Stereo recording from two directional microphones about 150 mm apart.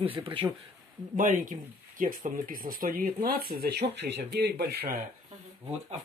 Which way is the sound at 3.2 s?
85° right.